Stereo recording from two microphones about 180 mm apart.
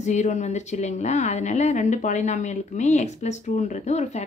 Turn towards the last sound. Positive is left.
turn(degrees=40)  # may be behind; listen again after turning